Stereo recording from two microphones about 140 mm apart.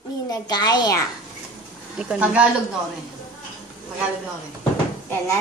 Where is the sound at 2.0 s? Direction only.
5° right (ahead or behind).